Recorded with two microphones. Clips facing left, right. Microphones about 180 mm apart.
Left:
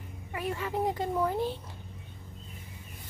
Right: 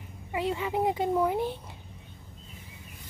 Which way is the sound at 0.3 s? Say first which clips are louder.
Right 4 dB; 20° right (ahead or behind).